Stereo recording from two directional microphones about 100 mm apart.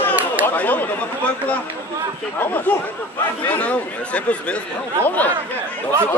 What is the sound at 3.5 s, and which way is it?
Speech, 15° left (ahead or behind).